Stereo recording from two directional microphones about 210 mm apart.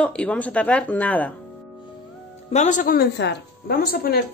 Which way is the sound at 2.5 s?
35° left (ahead or behind).